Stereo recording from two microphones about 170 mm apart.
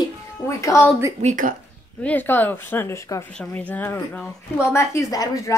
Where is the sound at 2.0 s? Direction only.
10° left (ahead or behind).